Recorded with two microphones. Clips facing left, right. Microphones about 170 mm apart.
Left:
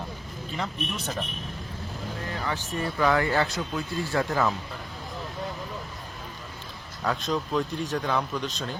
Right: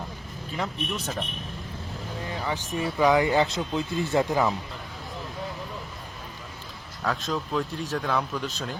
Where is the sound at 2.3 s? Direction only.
15° right (ahead or behind).